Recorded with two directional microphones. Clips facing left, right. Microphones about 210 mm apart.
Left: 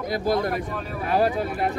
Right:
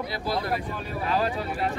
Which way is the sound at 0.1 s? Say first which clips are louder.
Left 7 dB; 45° left (ahead or behind).